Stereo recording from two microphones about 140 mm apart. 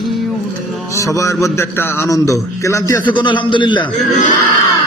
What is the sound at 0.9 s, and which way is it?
A man's voice, 25° left (ahead or behind).